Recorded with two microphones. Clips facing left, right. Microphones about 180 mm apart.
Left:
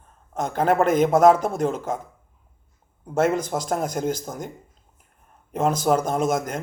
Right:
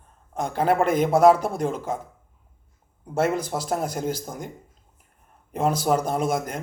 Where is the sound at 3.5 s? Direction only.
5° right (ahead or behind).